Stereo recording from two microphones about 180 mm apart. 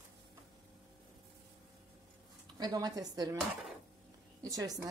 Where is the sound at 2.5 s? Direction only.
20° right (ahead or behind).